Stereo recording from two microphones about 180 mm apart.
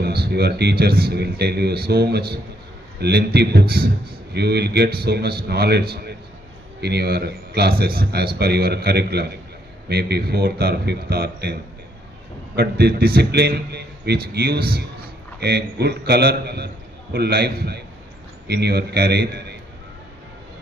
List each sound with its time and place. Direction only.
0.0 s a man's voice: 60° right (ahead or behind)
12.5 s a man's voice: 60° right (ahead or behind)